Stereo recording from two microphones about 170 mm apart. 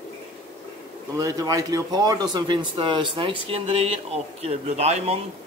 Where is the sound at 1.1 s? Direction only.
20° right (ahead or behind); by 5.2 s 40° right (ahead or behind).